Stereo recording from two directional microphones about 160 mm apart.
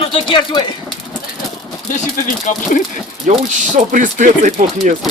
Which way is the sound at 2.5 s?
50° left (ahead or behind).